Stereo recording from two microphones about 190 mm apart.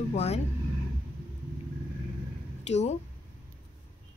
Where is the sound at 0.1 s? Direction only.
35° left (ahead or behind).